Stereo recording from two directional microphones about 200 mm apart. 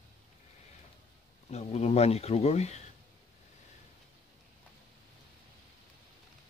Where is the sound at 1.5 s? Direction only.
35° left (ahead or behind).